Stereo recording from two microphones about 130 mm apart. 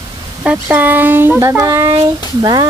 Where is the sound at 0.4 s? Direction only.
15° right (ahead or behind).